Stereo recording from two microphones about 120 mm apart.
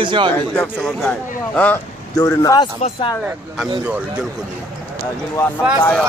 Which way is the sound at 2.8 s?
70° left (ahead or behind).